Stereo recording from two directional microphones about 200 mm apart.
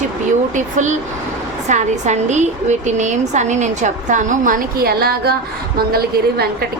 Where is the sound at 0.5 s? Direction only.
40° right (ahead or behind).